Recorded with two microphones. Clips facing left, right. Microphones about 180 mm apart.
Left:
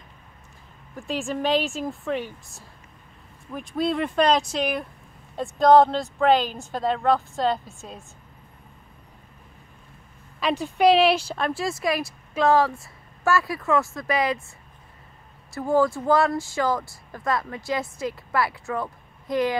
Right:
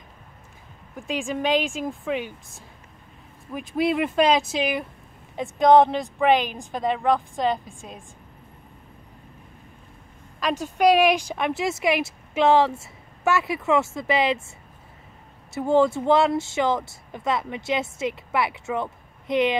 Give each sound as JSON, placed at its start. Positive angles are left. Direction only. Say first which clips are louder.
{"t": 0.9, "sound": "speech", "louder": "even", "side_deg": 0}
{"t": 5.4, "sound": "a woman's voice", "louder": "even", "side_deg": -20}
{"t": 10.6, "sound": "speech", "louder": "even", "side_deg": -10}
{"t": 15.5, "sound": "speech", "louder": "right 2 dB", "side_deg": -25}